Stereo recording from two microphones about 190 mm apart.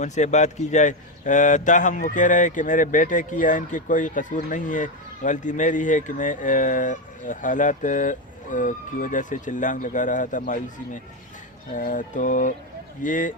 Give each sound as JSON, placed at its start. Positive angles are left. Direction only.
{"t": 0.0, "sound": "speech", "side_deg": 40}
{"t": 11.7, "sound": "mantra", "side_deg": 45}